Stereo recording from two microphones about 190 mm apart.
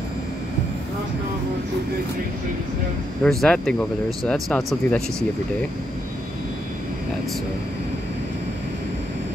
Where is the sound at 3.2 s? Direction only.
Centre (ahead or behind).